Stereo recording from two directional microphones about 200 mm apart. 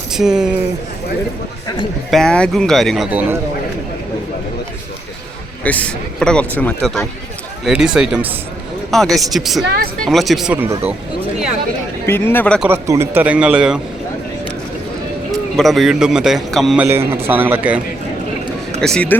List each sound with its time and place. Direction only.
0.1 s speech: 5° right (ahead or behind)
2.0 s a man's voice: centre (ahead or behind)
5.6 s a man's voice: 5° left (ahead or behind)
9.6 s speech: 50° right (ahead or behind)
10.1 s a man's voice: centre (ahead or behind)
12.0 s speech: 10° left (ahead or behind)
12.5 s a man's voice: 10° right (ahead or behind)
15.5 s a man's voice: centre (ahead or behind)
18.8 s a man's voice: 5° left (ahead or behind)